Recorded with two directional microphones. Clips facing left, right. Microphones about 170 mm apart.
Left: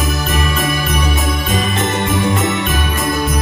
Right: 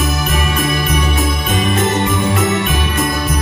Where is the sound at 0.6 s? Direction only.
Centre (ahead or behind).